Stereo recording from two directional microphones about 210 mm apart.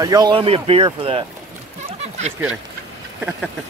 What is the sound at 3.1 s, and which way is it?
Speech, 5° right (ahead or behind).